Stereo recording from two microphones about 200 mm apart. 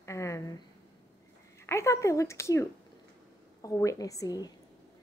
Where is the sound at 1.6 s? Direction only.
15° left (ahead or behind).